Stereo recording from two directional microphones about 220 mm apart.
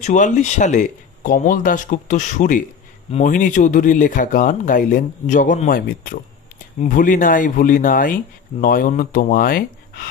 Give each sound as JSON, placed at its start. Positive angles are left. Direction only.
{"t": 0.0, "sound": "speech", "side_deg": 35}